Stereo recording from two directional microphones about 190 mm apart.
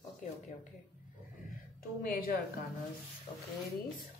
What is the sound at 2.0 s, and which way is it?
Speech, 45° left (ahead or behind).